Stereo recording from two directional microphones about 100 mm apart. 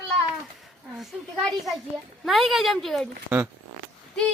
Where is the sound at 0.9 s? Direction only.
Centre (ahead or behind).